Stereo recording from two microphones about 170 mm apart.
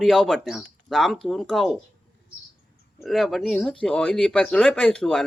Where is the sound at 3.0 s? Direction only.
Centre (ahead or behind).